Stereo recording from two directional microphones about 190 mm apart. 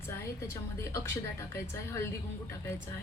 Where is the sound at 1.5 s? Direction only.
15° left (ahead or behind).